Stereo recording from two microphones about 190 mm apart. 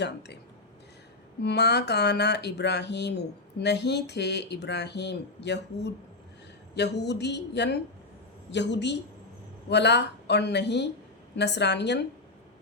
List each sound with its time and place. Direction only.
0.0 s speech: 65° left (ahead or behind)
1.4 s a woman's voice: 60° left (ahead or behind)